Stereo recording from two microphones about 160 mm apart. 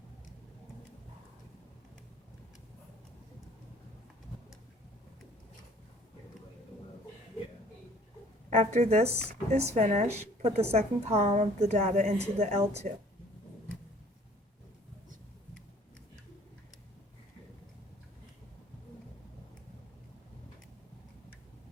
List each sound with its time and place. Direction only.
8.4 s a woman's voice: 45° right (ahead or behind)